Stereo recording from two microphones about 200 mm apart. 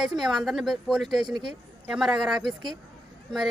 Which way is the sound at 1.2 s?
20° right (ahead or behind).